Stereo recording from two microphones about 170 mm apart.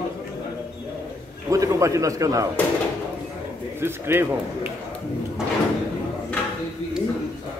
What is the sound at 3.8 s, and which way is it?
Speech, 15° right (ahead or behind).